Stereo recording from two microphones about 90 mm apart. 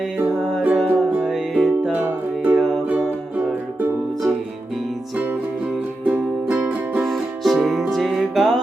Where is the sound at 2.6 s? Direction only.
Centre (ahead or behind).